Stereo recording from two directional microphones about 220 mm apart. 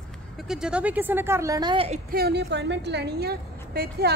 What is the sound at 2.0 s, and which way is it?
A woman's voice, 45° right (ahead or behind).